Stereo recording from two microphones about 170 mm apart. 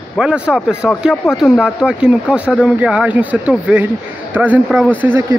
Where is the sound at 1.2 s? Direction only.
15° left (ahead or behind).